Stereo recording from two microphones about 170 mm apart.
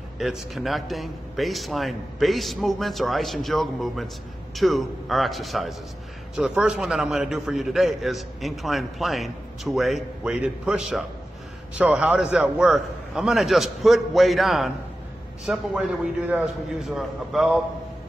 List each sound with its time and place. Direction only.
0.2 s a man's voice: centre (ahead or behind)